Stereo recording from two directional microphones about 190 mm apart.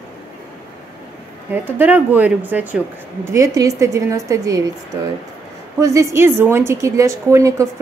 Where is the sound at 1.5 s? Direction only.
10° right (ahead or behind).